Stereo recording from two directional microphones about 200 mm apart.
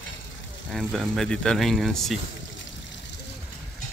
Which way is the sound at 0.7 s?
Centre (ahead or behind).